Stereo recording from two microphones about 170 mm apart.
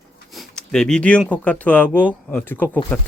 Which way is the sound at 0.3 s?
Centre (ahead or behind).